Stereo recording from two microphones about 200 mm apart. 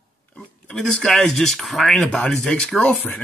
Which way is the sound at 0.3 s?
5° left (ahead or behind).